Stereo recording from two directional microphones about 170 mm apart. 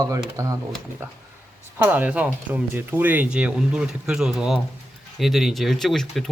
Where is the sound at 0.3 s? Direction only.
20° right (ahead or behind).